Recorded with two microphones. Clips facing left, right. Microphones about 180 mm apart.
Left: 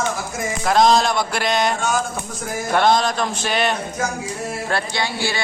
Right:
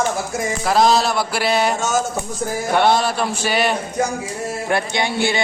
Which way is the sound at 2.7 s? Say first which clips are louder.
Even; 10° right (ahead or behind).